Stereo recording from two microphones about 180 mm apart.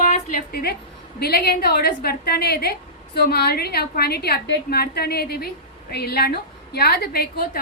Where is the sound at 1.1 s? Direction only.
60° left (ahead or behind).